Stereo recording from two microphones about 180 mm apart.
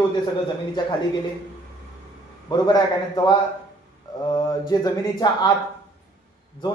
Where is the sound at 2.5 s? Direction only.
25° left (ahead or behind).